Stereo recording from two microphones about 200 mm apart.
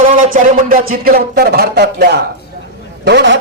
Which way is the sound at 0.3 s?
45° right (ahead or behind).